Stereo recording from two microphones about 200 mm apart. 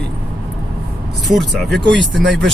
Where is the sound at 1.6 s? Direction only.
60° right (ahead or behind).